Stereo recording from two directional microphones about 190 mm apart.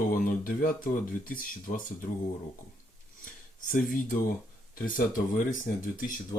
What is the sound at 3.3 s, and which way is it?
Speech, 45° left (ahead or behind).